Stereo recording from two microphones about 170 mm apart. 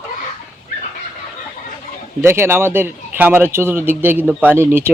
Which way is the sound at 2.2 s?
15° right (ahead or behind).